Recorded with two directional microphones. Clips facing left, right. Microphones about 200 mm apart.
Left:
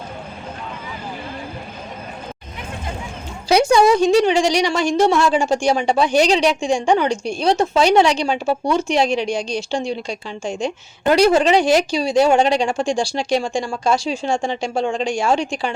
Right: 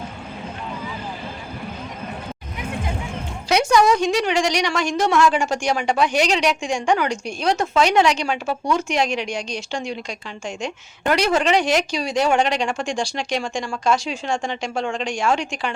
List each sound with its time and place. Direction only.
3.5 s music: 30° left (ahead or behind)
3.9 s a woman's voice: 30° left (ahead or behind)